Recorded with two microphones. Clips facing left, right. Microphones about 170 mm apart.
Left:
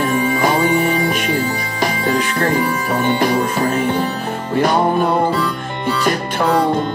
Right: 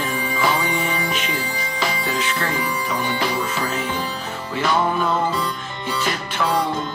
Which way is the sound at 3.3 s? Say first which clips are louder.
Left 7 dB; 40° left (ahead or behind).